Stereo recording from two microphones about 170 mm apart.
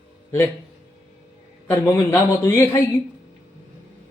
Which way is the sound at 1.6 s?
15° left (ahead or behind).